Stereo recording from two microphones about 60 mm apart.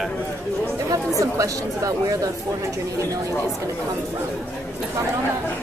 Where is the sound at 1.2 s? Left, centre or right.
Right.